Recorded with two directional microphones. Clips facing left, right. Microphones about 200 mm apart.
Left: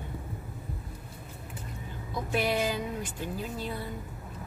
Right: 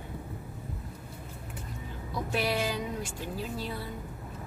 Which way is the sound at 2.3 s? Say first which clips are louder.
Left 2 dB; centre (ahead or behind).